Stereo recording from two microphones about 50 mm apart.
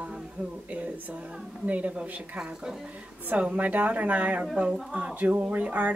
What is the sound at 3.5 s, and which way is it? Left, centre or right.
Speech, right.